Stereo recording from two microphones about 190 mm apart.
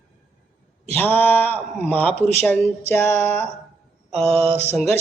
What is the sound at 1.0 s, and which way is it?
Speech, 10° left (ahead or behind).